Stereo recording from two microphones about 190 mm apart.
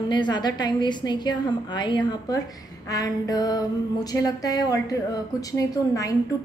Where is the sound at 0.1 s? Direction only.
25° left (ahead or behind).